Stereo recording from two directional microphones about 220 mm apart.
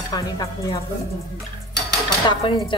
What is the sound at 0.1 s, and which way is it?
Dishes, 15° left (ahead or behind).